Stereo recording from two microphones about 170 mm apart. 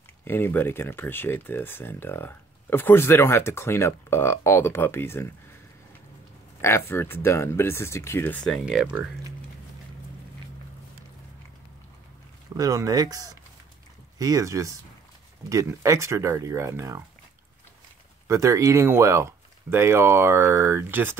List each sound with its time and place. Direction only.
0.2 s speech: 15° left (ahead or behind)
6.6 s speech: 15° left (ahead or behind); by 9.0 s 5° right (ahead or behind)
12.5 s speech: 20° right (ahead or behind)
18.2 s speech: 15° right (ahead or behind)